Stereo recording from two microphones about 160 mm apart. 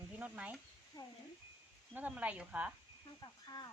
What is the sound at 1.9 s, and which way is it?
Speech, 10° right (ahead or behind).